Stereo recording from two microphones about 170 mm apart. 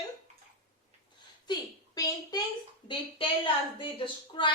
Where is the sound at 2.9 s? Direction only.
30° left (ahead or behind).